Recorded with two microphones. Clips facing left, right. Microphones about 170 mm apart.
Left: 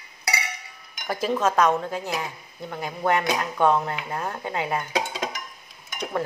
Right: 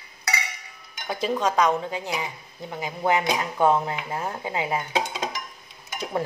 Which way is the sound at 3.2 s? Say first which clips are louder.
Even; 10° right (ahead or behind).